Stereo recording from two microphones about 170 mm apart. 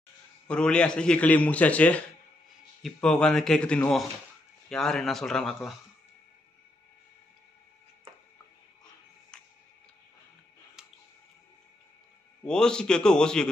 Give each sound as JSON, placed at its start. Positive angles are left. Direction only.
{"t": 0.5, "sound": "a man's voice", "side_deg": 5}
{"t": 9.3, "sound": "tick-tock", "side_deg": 5}
{"t": 12.4, "sound": "a man's voice", "side_deg": 5}